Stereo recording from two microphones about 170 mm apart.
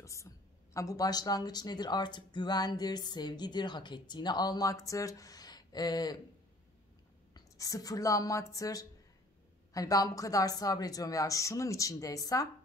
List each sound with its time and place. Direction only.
0.0 s a sound: 15° left (ahead or behind)
0.7 s speech: 20° left (ahead or behind)
7.3 s speech: 20° left (ahead or behind)